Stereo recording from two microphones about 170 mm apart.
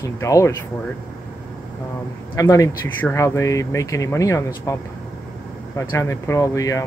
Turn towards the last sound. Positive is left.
turn(degrees=20)  # may be behind; listen again after turning